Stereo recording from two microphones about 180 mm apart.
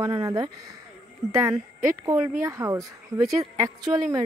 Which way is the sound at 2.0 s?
20° right (ahead or behind).